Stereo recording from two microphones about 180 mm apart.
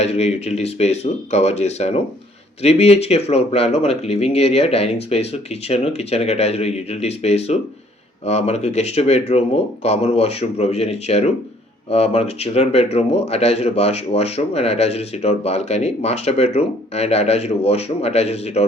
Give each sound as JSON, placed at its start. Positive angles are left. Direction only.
{"t": 0.0, "sound": "speech", "side_deg": 35}